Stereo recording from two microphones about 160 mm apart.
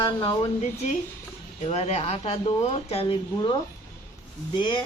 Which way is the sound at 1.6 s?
40° left (ahead or behind).